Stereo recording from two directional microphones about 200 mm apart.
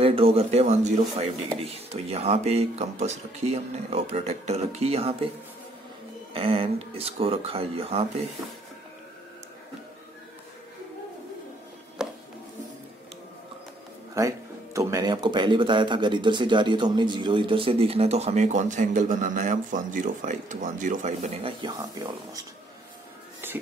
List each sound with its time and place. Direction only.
0.0 s speech: 30° right (ahead or behind)
6.3 s speech: 30° right (ahead or behind)
12.0 s music: 5° right (ahead or behind)
14.1 s speech: 15° right (ahead or behind)
23.4 s music: 10° right (ahead or behind)